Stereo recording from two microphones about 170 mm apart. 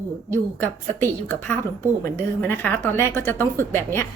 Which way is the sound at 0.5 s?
10° left (ahead or behind).